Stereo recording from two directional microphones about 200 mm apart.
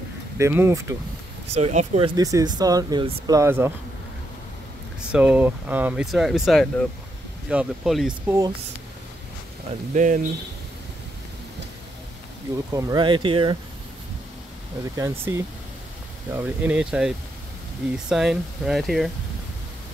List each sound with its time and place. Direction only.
0.4 s speech: 10° right (ahead or behind)
1.5 s speech: 35° right (ahead or behind); by 3.7 s 10° right (ahead or behind)
5.1 s speech: 5° right (ahead or behind)
9.9 s speech: 40° right (ahead or behind)
12.7 s speech: 20° right (ahead or behind)
15.0 s speech: 15° right (ahead or behind)
16.3 s speech: 5° right (ahead or behind)